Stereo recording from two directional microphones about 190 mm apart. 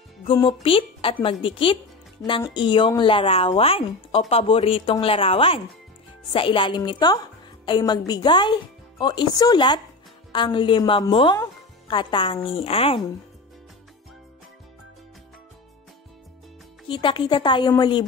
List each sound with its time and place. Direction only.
0.3 s speech: 25° left (ahead or behind)
16.8 s speech: 25° left (ahead or behind)